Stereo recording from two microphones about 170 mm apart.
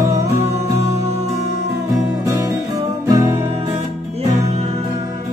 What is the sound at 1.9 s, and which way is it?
Music, 20° right (ahead or behind).